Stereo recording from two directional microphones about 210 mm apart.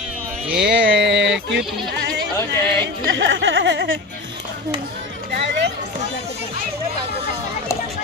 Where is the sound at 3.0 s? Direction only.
60° right (ahead or behind).